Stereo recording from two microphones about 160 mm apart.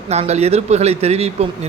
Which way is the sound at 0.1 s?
40° right (ahead or behind).